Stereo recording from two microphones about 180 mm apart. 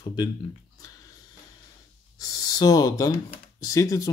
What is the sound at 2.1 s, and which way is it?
Speech, 20° left (ahead or behind).